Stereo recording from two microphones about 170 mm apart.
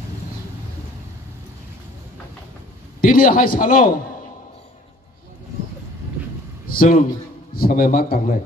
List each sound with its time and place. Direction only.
3.0 s a man's voice: 55° left (ahead or behind)
6.8 s a man's voice: 55° left (ahead or behind)